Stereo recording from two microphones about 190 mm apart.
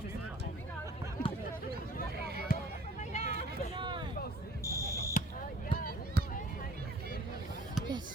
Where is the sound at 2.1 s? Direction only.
55° right (ahead or behind).